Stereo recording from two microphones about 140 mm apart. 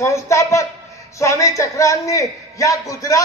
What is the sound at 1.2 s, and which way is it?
A man's voice, 20° left (ahead or behind).